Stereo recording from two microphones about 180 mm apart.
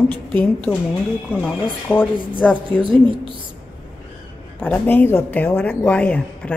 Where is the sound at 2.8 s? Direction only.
25° right (ahead or behind).